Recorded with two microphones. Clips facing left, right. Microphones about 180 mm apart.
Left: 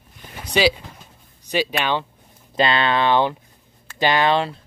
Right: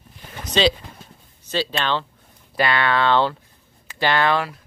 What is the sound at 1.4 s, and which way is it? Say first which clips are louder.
Speech: left 2 dB; 15° left (ahead or behind).